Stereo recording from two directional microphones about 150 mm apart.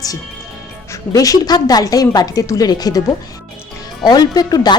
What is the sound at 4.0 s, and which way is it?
Speech, 25° left (ahead or behind).